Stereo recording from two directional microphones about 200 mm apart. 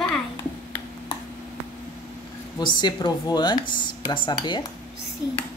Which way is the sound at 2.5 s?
20° left (ahead or behind).